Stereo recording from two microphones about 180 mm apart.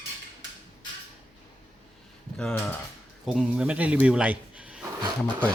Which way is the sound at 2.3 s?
5° left (ahead or behind).